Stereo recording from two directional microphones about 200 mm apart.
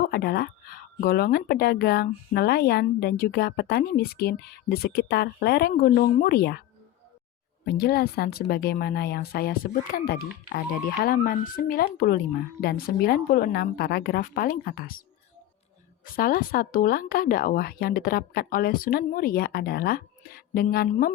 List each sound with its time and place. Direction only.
0.1 s speech: 50° left (ahead or behind)
7.6 s speech: 55° left (ahead or behind)
16.1 s speech: 45° left (ahead or behind)